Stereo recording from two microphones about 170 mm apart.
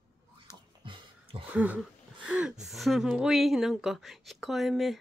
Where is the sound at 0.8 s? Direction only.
30° right (ahead or behind).